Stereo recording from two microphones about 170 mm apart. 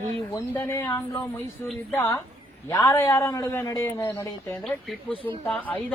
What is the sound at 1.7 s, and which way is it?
A man's voice, 10° left (ahead or behind).